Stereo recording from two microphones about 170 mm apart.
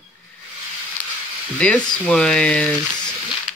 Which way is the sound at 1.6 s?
5° left (ahead or behind).